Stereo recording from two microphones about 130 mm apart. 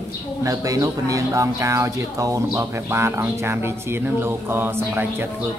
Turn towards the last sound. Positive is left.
turn(degrees=-15)  # may be behind; listen again after turning